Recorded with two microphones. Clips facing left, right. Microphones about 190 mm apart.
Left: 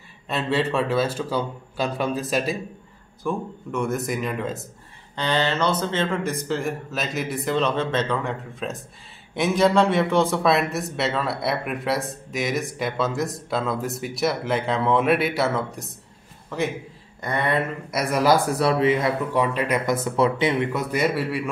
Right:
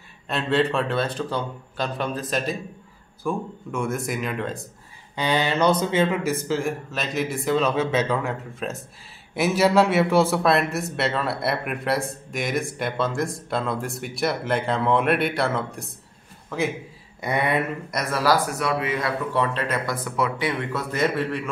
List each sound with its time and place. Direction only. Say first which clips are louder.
0.3 s a man's voice: right 1 dB; centre (ahead or behind)
5.1 s a man's voice: even; 10° right (ahead or behind)
17.2 s speech: right 1 dB; 10° right (ahead or behind)
18.1 s speech: left 2 dB; 20° left (ahead or behind)
18.6 s speech: left 5 dB; 30° left (ahead or behind); by 21.5 s 10° left (ahead or behind)